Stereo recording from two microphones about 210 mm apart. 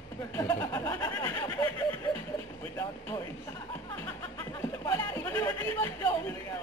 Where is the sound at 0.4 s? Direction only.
15° left (ahead or behind).